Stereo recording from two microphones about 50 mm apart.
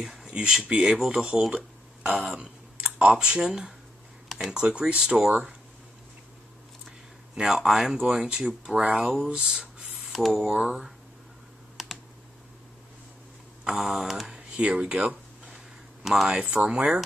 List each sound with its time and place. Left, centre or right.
0.0 s speech: centre
2.0 s speech: right
4.3 s a sound: centre
4.6 s speech: centre
7.3 s speech: centre
8.9 s speech: centre
9.3 s speech: centre
11.7 s computer keyboard: centre
13.7 s speech: centre
15.5 s a sound: centre
16.3 s speech: right